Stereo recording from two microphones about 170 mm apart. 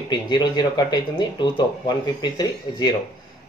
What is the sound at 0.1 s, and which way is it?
Speech, 25° left (ahead or behind).